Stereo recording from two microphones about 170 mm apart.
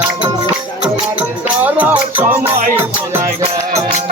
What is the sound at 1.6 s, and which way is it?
Music, 10° right (ahead or behind).